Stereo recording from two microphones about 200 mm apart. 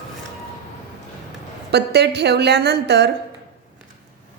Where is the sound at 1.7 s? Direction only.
55° right (ahead or behind).